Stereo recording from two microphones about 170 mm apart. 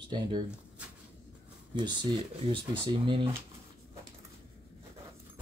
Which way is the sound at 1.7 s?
25° right (ahead or behind).